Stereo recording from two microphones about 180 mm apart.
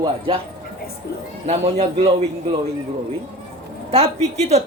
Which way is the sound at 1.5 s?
35° right (ahead or behind).